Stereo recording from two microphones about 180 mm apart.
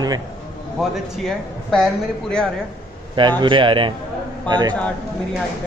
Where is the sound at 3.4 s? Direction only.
25° right (ahead or behind).